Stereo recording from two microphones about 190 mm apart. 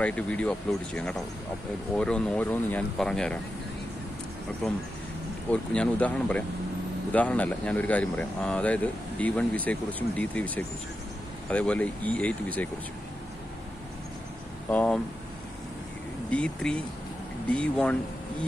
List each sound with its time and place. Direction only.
0.0 s speech: 5° left (ahead or behind)
5.5 s speech: 5° left (ahead or behind)
14.7 s speech: 5° left (ahead or behind)
16.3 s speech: 5° left (ahead or behind)